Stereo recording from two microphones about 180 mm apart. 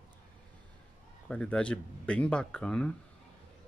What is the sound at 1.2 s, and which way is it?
Speech, 5° left (ahead or behind).